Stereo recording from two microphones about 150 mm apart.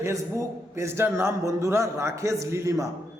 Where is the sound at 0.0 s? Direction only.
20° right (ahead or behind).